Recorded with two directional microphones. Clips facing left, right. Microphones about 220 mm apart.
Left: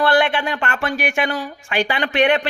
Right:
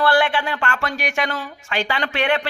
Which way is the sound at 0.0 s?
20° left (ahead or behind).